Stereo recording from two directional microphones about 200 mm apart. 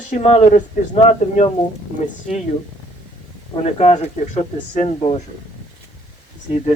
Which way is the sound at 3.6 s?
35° left (ahead or behind).